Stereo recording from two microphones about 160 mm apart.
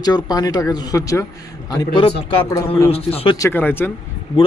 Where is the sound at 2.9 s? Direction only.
40° left (ahead or behind).